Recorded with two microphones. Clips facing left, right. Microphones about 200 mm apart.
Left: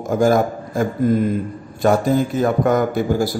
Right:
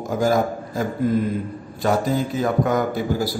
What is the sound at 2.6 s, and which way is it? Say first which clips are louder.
Speech: left 4 dB; 50° left (ahead or behind).